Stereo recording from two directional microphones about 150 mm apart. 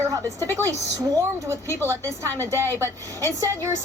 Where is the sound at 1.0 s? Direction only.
20° right (ahead or behind).